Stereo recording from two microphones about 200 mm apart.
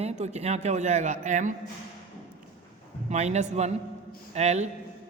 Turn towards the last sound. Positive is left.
turn(degrees=-35)  # may be behind; listen again after turning